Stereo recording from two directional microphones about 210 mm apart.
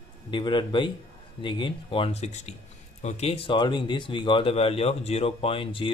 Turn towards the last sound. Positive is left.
turn(degrees=25)  # may be behind; listen again after turning